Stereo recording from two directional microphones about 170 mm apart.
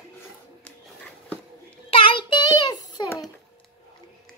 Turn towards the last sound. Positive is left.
turn(degrees=20)  # may be behind; listen again after turning